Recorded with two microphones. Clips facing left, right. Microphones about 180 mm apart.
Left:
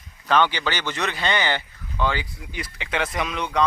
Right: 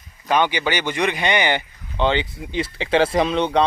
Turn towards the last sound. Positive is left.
turn(degrees=-30)  # may be behind; listen again after turning